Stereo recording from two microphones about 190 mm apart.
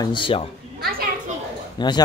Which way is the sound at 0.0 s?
25° left (ahead or behind).